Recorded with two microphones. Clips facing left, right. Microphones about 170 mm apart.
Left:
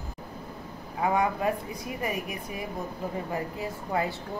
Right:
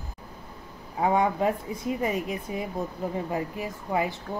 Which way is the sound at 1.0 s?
25° right (ahead or behind).